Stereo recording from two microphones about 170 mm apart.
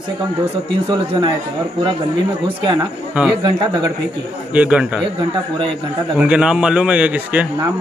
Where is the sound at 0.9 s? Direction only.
25° right (ahead or behind).